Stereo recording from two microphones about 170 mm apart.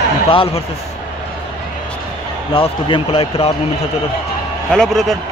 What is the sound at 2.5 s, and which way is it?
Speech, 35° left (ahead or behind).